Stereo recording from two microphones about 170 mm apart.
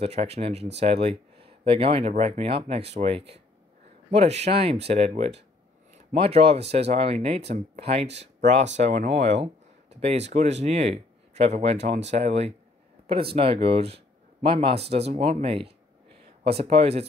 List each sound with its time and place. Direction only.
0.0 s speech: 35° right (ahead or behind)